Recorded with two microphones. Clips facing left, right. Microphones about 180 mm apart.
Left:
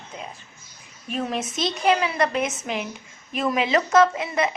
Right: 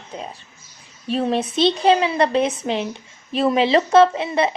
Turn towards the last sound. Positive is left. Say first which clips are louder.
# right 4 dB
turn(degrees=-30)  # may be behind; listen again after turning